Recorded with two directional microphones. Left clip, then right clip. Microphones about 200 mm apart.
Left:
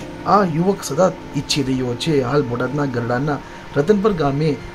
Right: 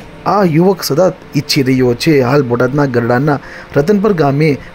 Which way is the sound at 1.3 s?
70° right (ahead or behind).